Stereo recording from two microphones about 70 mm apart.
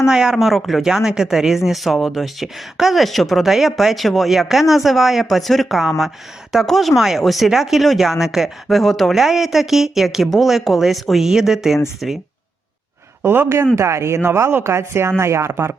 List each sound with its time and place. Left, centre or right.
0.1 s speech: centre
13.2 s speech: right